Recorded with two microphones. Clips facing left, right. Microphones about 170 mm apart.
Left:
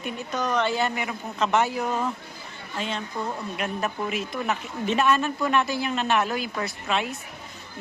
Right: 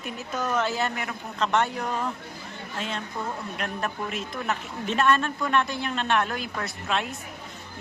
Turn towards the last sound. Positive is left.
turn(degrees=0)  # may be behind; listen again after turning